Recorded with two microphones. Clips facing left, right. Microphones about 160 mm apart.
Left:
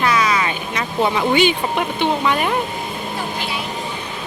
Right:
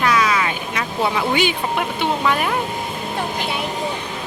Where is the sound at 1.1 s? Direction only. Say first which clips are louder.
Left 5 dB; 5° right (ahead or behind).